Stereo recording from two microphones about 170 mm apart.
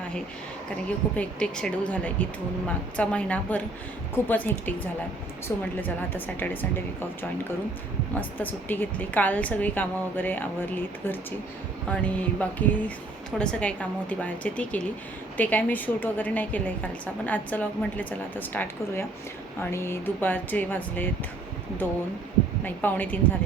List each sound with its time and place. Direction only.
0.9 s a woman's voice: 10° left (ahead or behind)
22.6 s a woman's voice: 10° left (ahead or behind)